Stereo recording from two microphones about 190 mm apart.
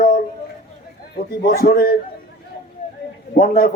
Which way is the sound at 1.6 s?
50° left (ahead or behind).